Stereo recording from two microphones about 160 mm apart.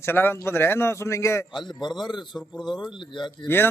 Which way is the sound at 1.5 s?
30° left (ahead or behind).